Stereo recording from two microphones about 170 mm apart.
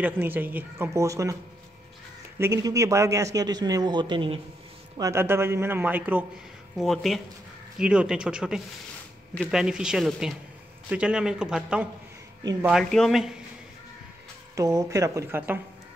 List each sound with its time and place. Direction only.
0.0 s speech: 10° right (ahead or behind)
2.3 s a man's voice: 15° right (ahead or behind)
4.9 s speech: 15° right (ahead or behind)
6.8 s a man's voice: centre (ahead or behind)
14.5 s a man's voice: 20° right (ahead or behind)